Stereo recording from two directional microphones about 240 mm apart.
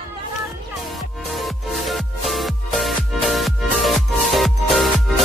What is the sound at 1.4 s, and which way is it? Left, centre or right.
Music, centre.